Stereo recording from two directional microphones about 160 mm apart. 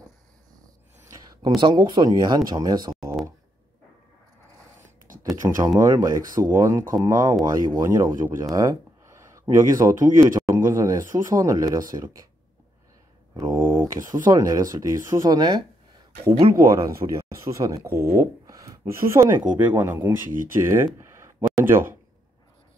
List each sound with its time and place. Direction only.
1.0 s a sound: 20° right (ahead or behind)
1.6 s speech: 30° right (ahead or behind)
5.4 s speech: 20° right (ahead or behind)
13.4 s speech: 15° right (ahead or behind)
16.7 s speech: 20° right (ahead or behind)
21.5 s a sound: 15° right (ahead or behind)